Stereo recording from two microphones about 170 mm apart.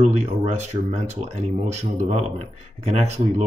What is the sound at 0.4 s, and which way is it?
Speech, 40° right (ahead or behind).